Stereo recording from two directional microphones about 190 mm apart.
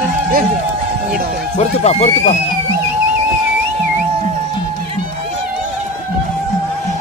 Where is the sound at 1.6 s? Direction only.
35° left (ahead or behind).